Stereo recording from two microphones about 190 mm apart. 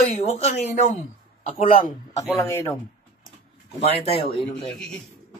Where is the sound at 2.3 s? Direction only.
15° left (ahead or behind).